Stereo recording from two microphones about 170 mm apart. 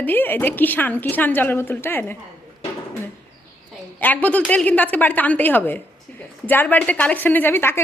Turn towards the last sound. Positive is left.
turn(degrees=15)  # may be behind; listen again after turning